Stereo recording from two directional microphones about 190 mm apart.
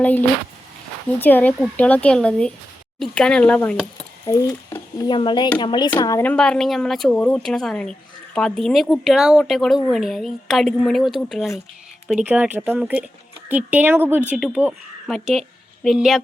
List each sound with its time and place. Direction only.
1.2 s a woman's voice: 10° left (ahead or behind)
4.3 s a woman's voice: 15° left (ahead or behind); by 16.2 s centre (ahead or behind)